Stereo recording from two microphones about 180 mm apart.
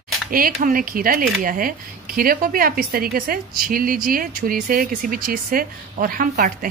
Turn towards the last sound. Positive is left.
turn(degrees=-50)  # may be behind; listen again after turning